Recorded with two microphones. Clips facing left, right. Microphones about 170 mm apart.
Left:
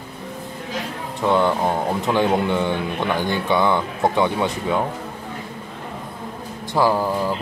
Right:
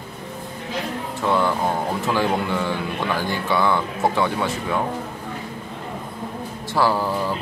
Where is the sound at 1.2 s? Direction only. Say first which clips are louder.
Left 3 dB; 20° left (ahead or behind).